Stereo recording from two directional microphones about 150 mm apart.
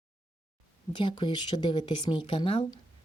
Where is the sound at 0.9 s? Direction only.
30° left (ahead or behind).